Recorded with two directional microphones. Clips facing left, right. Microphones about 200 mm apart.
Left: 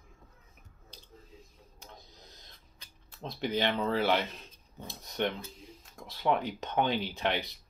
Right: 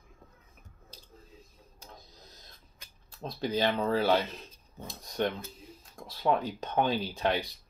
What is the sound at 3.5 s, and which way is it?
Speech, 45° right (ahead or behind).